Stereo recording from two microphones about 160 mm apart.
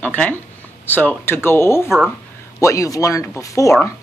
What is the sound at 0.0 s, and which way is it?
Speech, 10° left (ahead or behind).